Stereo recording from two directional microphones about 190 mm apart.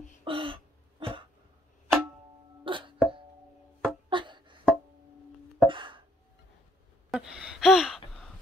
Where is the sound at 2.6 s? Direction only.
25° right (ahead or behind).